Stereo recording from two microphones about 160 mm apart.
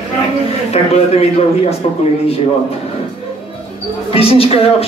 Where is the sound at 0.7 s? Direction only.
40° left (ahead or behind).